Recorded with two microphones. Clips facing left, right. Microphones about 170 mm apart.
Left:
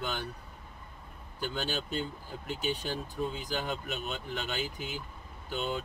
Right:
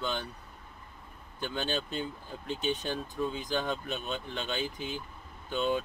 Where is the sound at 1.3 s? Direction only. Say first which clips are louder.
Right 1 dB; 5° left (ahead or behind).